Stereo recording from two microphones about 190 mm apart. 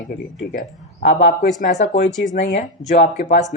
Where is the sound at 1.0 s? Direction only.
65° left (ahead or behind).